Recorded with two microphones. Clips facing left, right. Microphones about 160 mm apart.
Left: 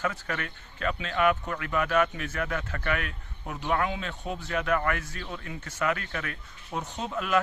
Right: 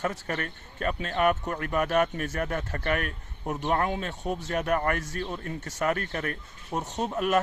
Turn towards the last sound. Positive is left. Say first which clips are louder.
# right 4 dB
turn(degrees=-40)  # may be behind; listen again after turning